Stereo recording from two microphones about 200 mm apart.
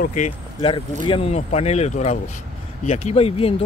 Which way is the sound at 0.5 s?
25° left (ahead or behind).